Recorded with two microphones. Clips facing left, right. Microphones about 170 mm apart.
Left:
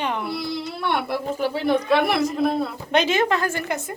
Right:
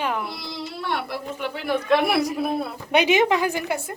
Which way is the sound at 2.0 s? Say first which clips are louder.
Left 2 dB; 10° right (ahead or behind).